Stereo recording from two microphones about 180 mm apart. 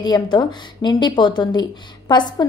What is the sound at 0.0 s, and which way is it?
A woman's voice, 25° left (ahead or behind).